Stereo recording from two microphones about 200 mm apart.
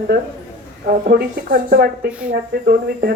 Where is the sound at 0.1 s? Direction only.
55° right (ahead or behind).